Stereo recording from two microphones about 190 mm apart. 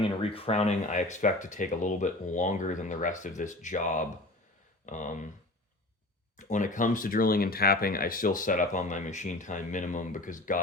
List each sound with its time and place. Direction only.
0.2 s speech: 30° left (ahead or behind)
6.3 s speech: 40° left (ahead or behind)